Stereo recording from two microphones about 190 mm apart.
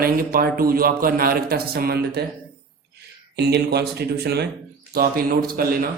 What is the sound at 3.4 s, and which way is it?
A man's voice, 60° right (ahead or behind).